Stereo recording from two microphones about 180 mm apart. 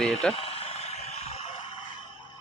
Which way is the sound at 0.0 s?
5° left (ahead or behind).